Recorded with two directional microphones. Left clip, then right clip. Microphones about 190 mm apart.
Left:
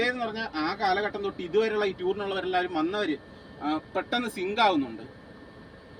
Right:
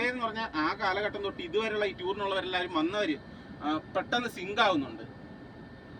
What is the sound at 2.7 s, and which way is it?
Speech, 40° left (ahead or behind).